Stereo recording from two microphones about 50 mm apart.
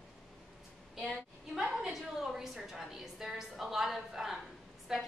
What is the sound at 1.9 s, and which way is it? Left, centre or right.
A woman's voice, centre.